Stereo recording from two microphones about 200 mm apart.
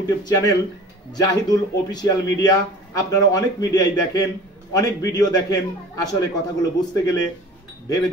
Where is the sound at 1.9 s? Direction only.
20° left (ahead or behind).